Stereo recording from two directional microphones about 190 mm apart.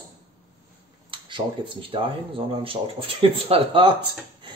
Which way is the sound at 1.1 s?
25° right (ahead or behind).